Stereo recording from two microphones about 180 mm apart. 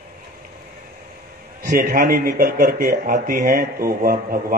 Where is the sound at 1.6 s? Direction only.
50° right (ahead or behind).